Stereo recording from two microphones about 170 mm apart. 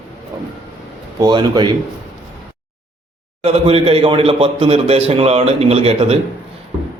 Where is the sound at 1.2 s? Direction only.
25° right (ahead or behind).